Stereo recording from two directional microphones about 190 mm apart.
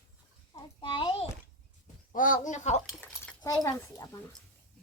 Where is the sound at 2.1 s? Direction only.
45° left (ahead or behind).